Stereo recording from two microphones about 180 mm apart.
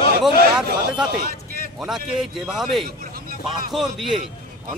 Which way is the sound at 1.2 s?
55° right (ahead or behind).